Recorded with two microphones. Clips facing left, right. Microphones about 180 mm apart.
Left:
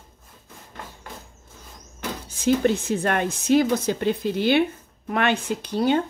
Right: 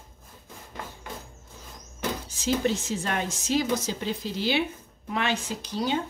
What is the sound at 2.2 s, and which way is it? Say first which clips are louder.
Speech: left 7 dB; 55° left (ahead or behind).